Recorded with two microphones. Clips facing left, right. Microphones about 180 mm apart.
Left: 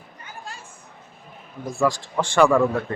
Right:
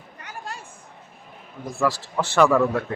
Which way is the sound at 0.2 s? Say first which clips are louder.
Right 3 dB; 70° right (ahead or behind).